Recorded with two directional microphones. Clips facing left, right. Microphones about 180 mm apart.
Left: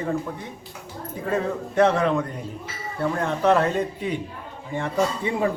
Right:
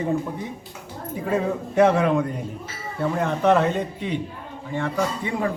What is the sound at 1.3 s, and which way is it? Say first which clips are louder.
A man's voice: right 1 dB; 10° right (ahead or behind).